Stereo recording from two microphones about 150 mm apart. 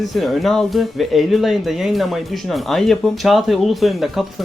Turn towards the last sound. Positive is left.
turn(degrees=0)  # may be behind; listen again after turning